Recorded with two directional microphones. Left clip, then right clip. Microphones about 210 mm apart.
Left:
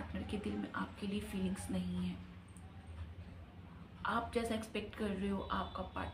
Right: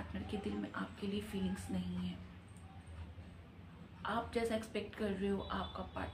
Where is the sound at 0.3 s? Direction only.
10° left (ahead or behind).